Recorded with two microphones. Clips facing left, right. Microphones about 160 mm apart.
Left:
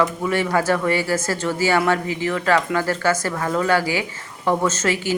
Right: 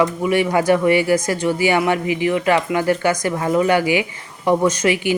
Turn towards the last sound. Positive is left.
turn(degrees=-15)  # may be behind; listen again after turning